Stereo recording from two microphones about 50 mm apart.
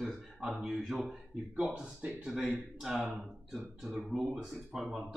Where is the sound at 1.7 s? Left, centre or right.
Right.